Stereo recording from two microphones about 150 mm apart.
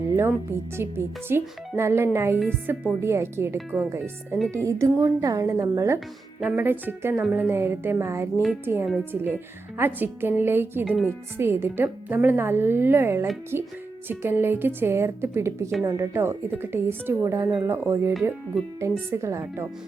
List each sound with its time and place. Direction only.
0.2 s speech: 15° right (ahead or behind)